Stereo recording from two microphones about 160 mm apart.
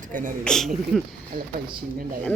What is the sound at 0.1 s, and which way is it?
Speech, 55° right (ahead or behind).